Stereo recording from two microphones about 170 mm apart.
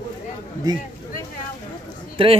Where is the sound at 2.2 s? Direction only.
30° right (ahead or behind).